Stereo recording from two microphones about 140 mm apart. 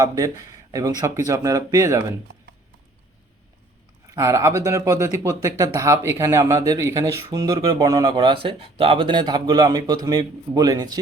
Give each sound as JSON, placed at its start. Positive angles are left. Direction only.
{"t": 0.0, "sound": "speech", "side_deg": -25}
{"t": 4.1, "sound": "speech", "side_deg": -20}